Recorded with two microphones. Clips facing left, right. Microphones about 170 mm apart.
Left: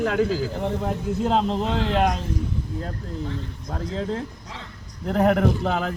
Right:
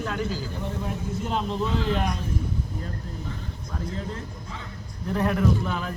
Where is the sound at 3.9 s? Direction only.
90° left.